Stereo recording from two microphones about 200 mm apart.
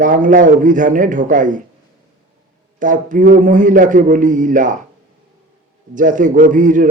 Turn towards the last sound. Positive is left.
turn(degrees=-40)  # may be behind; listen again after turning